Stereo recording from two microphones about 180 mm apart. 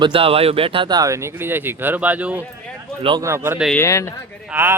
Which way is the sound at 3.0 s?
25° right (ahead or behind).